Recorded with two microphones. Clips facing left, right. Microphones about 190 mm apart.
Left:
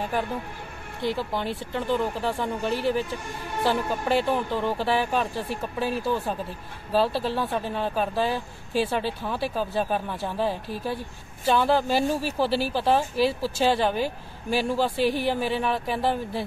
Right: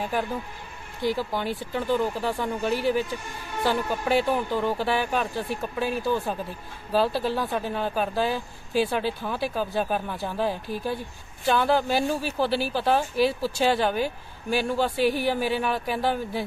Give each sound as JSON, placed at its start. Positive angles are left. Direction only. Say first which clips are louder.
{"t": 1.0, "sound": "speech", "louder": "right 1 dB", "side_deg": 0}